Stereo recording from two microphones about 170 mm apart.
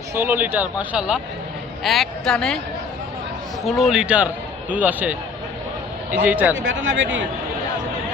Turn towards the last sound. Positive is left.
turn(degrees=-90)